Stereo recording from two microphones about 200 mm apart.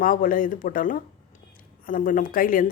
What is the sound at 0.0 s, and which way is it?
A woman's voice, 45° left (ahead or behind).